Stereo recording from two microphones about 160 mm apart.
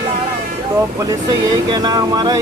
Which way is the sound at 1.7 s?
25° right (ahead or behind).